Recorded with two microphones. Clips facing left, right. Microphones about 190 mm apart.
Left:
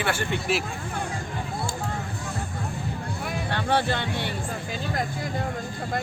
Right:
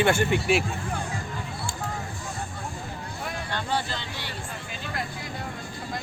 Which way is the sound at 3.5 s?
60° left (ahead or behind).